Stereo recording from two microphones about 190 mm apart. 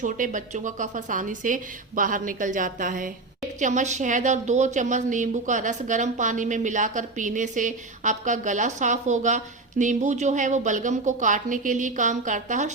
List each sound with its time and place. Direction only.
0.0 s a woman's voice: 40° right (ahead or behind)